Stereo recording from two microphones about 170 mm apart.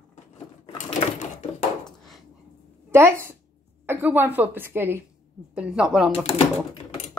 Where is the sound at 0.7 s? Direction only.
45° left (ahead or behind).